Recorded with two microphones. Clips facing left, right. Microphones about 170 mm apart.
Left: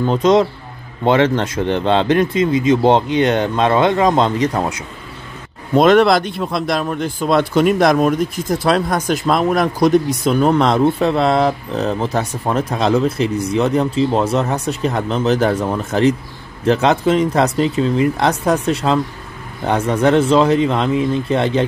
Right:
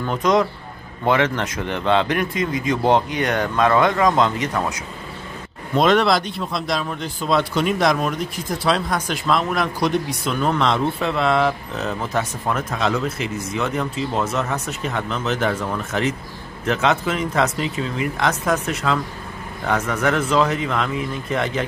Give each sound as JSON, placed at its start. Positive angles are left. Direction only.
{"t": 0.0, "sound": "speech", "side_deg": 25}
{"t": 5.8, "sound": "speech", "side_deg": 50}